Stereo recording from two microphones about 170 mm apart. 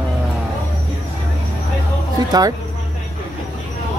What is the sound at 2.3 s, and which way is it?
Speech, 20° right (ahead or behind).